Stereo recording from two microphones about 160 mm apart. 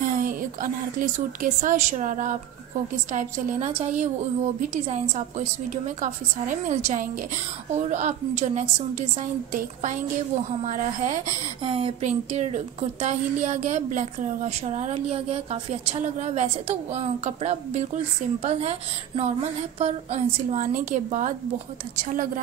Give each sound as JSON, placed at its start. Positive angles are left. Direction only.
{"t": 0.0, "sound": "a woman's voice", "side_deg": -60}
{"t": 5.9, "sound": "a woman's voice", "side_deg": -55}